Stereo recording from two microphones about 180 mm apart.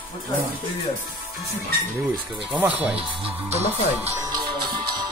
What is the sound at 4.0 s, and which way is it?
Music, 20° right (ahead or behind).